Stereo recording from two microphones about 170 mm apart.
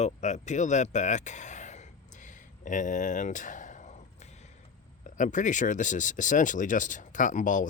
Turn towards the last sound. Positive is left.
turn(degrees=50)  # may be behind; listen again after turning